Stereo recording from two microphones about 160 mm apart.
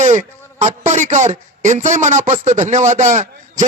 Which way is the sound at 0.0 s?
50° right (ahead or behind).